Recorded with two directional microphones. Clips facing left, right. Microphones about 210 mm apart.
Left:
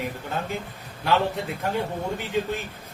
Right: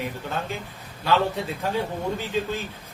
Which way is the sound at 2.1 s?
15° left (ahead or behind).